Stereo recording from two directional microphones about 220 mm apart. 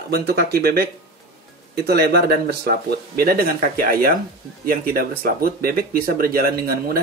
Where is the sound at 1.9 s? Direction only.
45° right (ahead or behind).